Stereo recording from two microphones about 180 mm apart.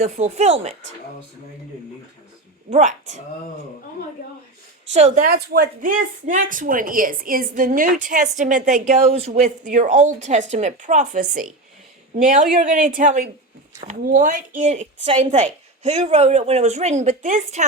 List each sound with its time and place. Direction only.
0.0 s a woman's voice: 40° right (ahead or behind)
2.6 s speech: 40° right (ahead or behind)
4.9 s a woman's voice: 40° right (ahead or behind)
5.2 s a woman's voice: 55° right (ahead or behind); by 17.6 s 40° right (ahead or behind)